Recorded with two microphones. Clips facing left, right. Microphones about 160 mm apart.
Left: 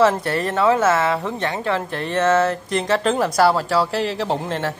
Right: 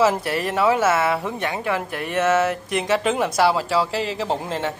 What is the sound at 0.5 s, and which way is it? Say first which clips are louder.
Speech: left 2 dB; 10° right (ahead or behind).